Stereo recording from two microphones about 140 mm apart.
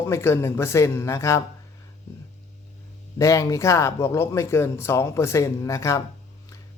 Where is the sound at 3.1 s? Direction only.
25° left (ahead or behind).